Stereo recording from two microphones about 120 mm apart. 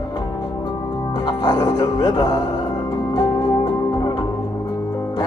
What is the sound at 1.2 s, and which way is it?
Speech, 30° left (ahead or behind).